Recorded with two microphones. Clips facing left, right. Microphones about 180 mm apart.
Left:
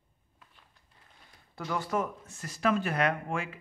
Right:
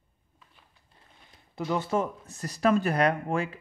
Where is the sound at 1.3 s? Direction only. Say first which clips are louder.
Right 5 dB; 20° right (ahead or behind).